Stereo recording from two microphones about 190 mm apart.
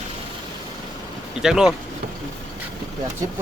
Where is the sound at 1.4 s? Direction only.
5° right (ahead or behind).